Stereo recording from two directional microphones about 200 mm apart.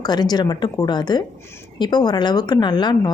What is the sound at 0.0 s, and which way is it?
A woman's voice, 20° left (ahead or behind).